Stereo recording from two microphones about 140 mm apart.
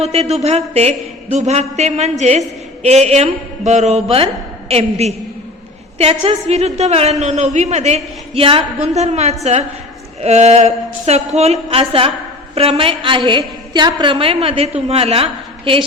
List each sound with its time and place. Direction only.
0.0 s a woman's voice: 50° right (ahead or behind)